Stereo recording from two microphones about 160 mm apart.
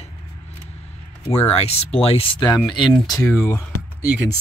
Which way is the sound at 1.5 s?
40° left (ahead or behind).